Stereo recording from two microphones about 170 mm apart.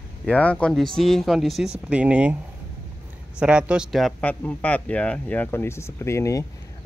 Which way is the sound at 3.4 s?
5° right (ahead or behind).